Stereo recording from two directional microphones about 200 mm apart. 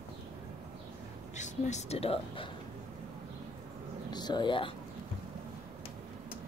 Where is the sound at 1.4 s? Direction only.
35° left (ahead or behind).